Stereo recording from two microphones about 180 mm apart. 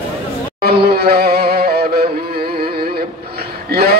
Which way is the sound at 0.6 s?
60° right (ahead or behind).